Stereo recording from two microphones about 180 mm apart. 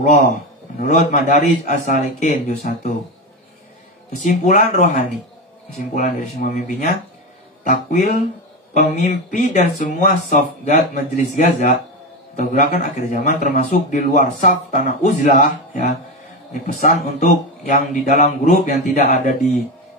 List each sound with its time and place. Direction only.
0.7 s speech: 45° left (ahead or behind)
4.1 s speech: 45° left (ahead or behind)
7.6 s speech: 45° left (ahead or behind)